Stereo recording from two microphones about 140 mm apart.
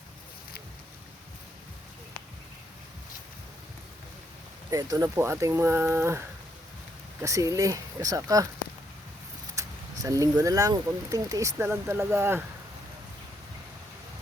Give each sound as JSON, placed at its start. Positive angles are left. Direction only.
{"t": 4.7, "sound": "speech", "side_deg": -25}
{"t": 9.6, "sound": "vehicle", "side_deg": -20}
{"t": 10.0, "sound": "speech", "side_deg": -25}